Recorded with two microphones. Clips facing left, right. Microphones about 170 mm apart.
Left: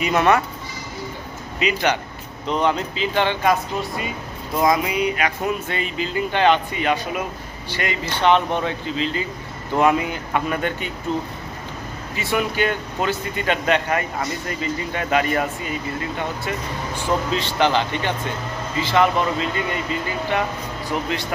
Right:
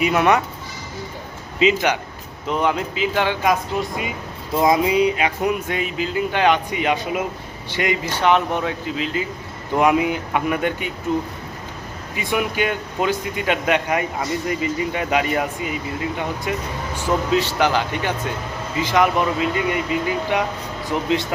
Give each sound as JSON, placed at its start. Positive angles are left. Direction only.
{"t": 0.0, "sound": "speech", "side_deg": -10}
{"t": 1.6, "sound": "speech", "side_deg": -25}
{"t": 2.5, "sound": "speech", "side_deg": -10}
{"t": 4.5, "sound": "speech", "side_deg": -25}
{"t": 12.1, "sound": "speech", "side_deg": -15}